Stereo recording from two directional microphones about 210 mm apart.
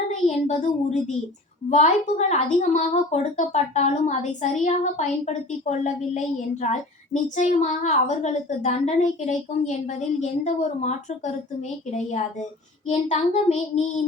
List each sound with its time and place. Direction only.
0.3 s a woman's voice: 30° left (ahead or behind)